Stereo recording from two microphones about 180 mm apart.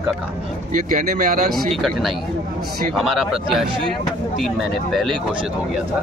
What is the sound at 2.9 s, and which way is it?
Speech, centre (ahead or behind).